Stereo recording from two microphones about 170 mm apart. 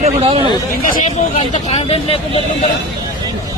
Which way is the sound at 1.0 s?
40° left (ahead or behind).